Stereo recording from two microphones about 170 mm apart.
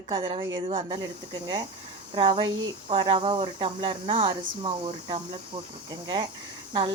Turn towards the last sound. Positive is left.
turn(degrees=-25)  # may be behind; listen again after turning